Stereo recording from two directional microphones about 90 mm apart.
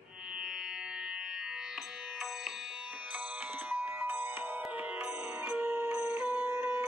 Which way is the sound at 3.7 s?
20° right (ahead or behind).